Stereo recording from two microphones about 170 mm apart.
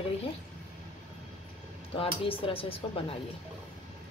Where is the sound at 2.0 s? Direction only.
30° left (ahead or behind).